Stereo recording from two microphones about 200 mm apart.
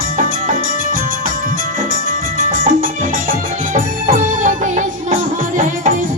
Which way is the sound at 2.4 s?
45° right (ahead or behind).